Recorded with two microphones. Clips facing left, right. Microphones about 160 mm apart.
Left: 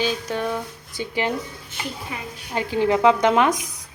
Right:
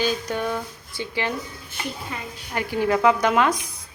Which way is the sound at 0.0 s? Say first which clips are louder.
Even; centre (ahead or behind).